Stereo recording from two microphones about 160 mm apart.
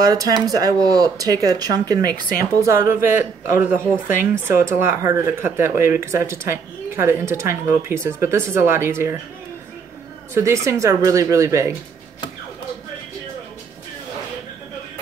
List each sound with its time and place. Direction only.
0.0 s speech: 25° right (ahead or behind)
3.7 s speech: 55° left (ahead or behind)
4.6 s speech: 15° right (ahead or behind)
10.3 s speech: 20° right (ahead or behind)